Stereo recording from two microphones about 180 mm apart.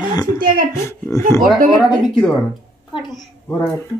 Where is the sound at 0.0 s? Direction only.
20° left (ahead or behind).